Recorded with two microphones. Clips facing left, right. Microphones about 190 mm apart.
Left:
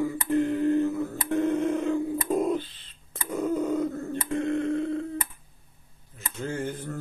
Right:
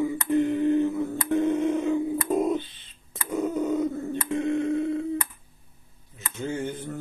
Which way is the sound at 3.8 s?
10° right (ahead or behind).